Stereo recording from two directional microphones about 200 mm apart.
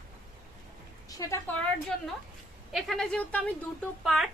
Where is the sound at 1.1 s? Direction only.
15° left (ahead or behind).